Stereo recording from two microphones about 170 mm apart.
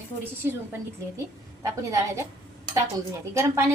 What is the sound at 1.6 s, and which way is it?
Speech, 15° right (ahead or behind).